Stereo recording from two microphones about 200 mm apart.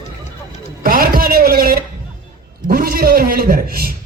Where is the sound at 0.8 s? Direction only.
45° right (ahead or behind).